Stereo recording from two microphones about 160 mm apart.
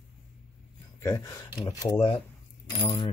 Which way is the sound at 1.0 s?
20° left (ahead or behind).